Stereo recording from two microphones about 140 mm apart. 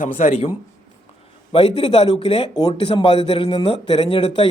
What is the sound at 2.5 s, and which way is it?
Speech, 30° left (ahead or behind).